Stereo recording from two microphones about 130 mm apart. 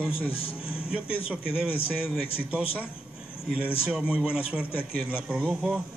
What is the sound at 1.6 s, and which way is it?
Speech, 45° left (ahead or behind).